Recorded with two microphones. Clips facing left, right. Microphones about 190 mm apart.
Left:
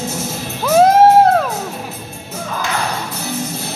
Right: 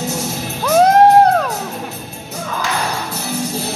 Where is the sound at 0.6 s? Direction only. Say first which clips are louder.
Left 1 dB; 5° left (ahead or behind).